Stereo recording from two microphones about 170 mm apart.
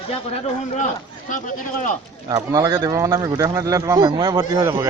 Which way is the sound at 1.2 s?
50° left (ahead or behind).